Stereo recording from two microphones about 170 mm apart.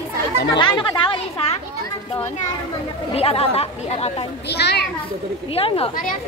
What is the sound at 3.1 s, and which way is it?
Speech, 35° left (ahead or behind).